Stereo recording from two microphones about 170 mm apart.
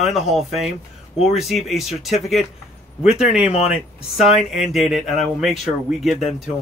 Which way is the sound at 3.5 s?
40° left (ahead or behind).